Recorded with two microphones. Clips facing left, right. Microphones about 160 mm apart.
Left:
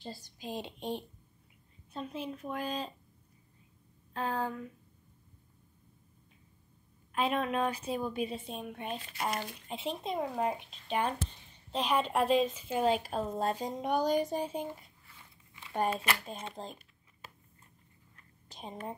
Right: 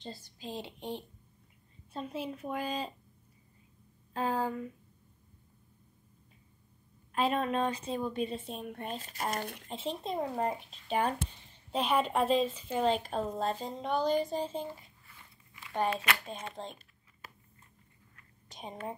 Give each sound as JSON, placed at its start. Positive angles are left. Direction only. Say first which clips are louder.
{"t": 0.2, "sound": "speech", "louder": "left 1 dB", "side_deg": 15}
{"t": 2.0, "sound": "speech", "louder": "right 1 dB", "side_deg": -5}
{"t": 4.1, "sound": "speech", "louder": "right 2 dB", "side_deg": -5}
{"t": 7.1, "sound": "a woman's voice", "louder": "right 1 dB", "side_deg": 0}
{"t": 8.9, "sound": "speech", "louder": "left 1 dB", "side_deg": -40}
{"t": 9.7, "sound": "a woman's voice", "louder": "left 1 dB", "side_deg": 0}